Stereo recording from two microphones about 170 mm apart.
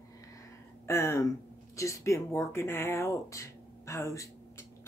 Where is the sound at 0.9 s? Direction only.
15° left (ahead or behind).